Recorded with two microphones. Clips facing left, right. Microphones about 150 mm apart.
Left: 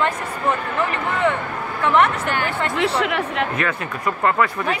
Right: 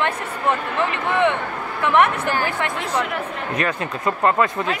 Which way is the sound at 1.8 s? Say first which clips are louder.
Even; 15° right (ahead or behind).